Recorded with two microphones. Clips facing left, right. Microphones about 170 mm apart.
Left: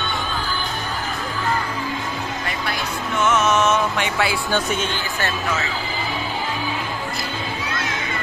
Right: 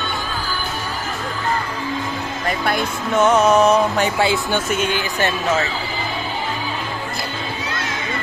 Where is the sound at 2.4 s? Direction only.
50° right (ahead or behind).